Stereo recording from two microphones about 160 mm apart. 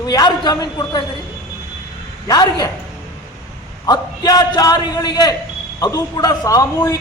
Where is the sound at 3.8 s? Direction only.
25° left (ahead or behind).